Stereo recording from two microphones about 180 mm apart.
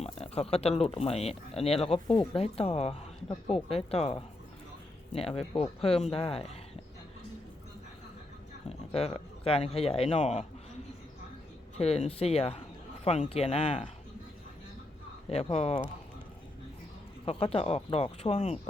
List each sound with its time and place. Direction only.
0.0 s speech: 35° left (ahead or behind)
8.9 s speech: 35° left (ahead or behind)
11.8 s speech: 35° left (ahead or behind)
15.3 s speech: 35° left (ahead or behind)
17.2 s speech: 35° left (ahead or behind)